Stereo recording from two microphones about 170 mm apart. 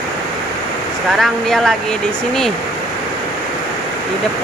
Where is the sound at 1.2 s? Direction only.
Centre (ahead or behind).